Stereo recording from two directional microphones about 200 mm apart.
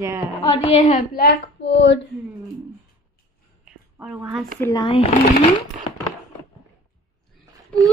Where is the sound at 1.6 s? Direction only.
65° left (ahead or behind).